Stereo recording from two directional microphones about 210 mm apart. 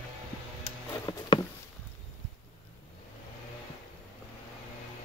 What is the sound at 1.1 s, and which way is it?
Patter, 25° left (ahead or behind).